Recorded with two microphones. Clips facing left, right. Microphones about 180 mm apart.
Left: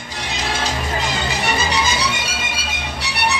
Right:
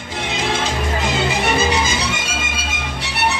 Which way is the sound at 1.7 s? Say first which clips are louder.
Right 1 dB; 50° right (ahead or behind).